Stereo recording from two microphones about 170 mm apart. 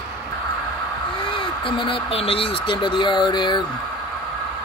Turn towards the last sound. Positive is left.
turn(degrees=25)  # may be behind; listen again after turning